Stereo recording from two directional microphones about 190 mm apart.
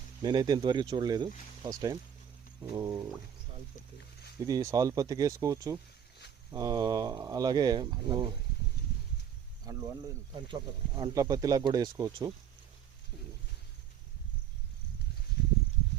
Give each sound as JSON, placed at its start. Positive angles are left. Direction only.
{"t": 0.2, "sound": "speech", "side_deg": -20}
{"t": 4.4, "sound": "speech", "side_deg": -20}
{"t": 9.7, "sound": "speech", "side_deg": -20}